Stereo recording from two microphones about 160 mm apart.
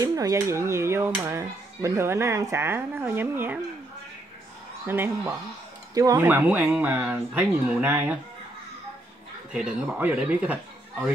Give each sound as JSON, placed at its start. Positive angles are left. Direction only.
{"t": 0.0, "sound": "speech", "side_deg": -20}
{"t": 4.8, "sound": "speech", "side_deg": -15}
{"t": 9.5, "sound": "speech", "side_deg": -10}